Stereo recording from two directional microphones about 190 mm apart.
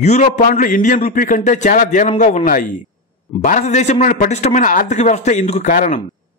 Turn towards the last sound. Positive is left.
turn(degrees=40)  # may be behind; listen again after turning